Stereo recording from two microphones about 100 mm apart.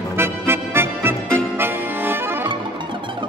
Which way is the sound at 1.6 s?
20° right (ahead or behind).